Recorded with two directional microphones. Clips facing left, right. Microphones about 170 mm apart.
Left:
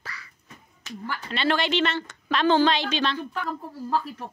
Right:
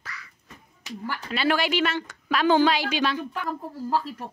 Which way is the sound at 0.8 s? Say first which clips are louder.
Right 1 dB; 10° right (ahead or behind).